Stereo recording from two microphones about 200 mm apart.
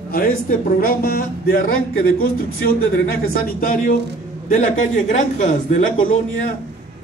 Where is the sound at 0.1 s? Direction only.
45° left (ahead or behind).